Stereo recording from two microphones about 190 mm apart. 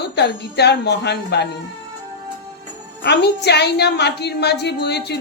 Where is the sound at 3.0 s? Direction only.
60° left (ahead or behind).